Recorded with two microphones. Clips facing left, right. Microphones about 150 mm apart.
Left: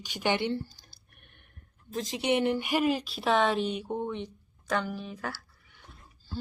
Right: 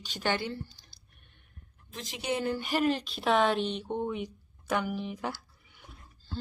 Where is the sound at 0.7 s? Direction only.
45° left (ahead or behind).